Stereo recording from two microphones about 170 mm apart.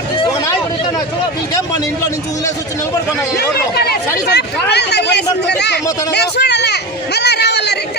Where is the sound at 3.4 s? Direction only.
70° left (ahead or behind).